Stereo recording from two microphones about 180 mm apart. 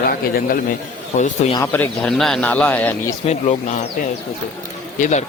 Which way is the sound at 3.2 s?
35° left (ahead or behind).